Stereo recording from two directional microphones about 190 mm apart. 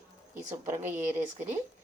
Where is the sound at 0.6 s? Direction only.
10° right (ahead or behind).